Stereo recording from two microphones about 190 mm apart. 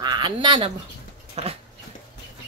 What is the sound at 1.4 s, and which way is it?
Dog, 35° right (ahead or behind).